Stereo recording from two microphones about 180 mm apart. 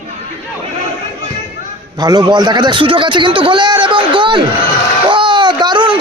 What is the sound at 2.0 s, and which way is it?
A man's voice, 25° right (ahead or behind).